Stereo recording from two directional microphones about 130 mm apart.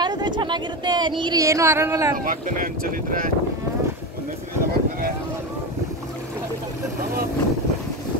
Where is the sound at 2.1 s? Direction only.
90° right.